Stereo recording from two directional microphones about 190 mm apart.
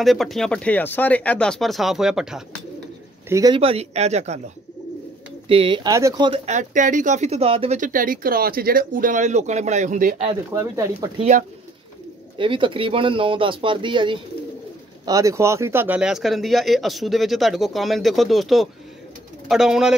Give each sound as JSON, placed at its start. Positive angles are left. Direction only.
{"t": 0.0, "sound": "speech", "side_deg": 0}
{"t": 3.3, "sound": "speech", "side_deg": -20}
{"t": 5.5, "sound": "speech", "side_deg": -30}
{"t": 5.9, "sound": "speech", "side_deg": -15}
{"t": 10.5, "sound": "speech", "side_deg": -15}
{"t": 12.4, "sound": "speech", "side_deg": -25}